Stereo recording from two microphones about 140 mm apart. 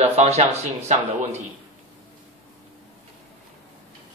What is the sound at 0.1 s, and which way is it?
Speech, 45° right (ahead or behind).